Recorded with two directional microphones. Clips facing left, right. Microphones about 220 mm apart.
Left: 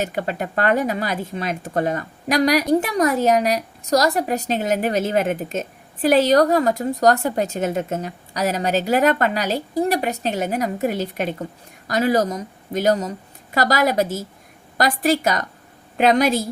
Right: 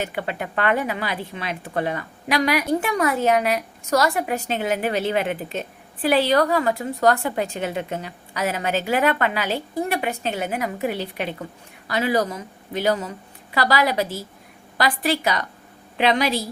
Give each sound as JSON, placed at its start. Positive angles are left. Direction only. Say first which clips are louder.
{"t": 0.0, "sound": "speech", "louder": "left 3 dB", "side_deg": 40}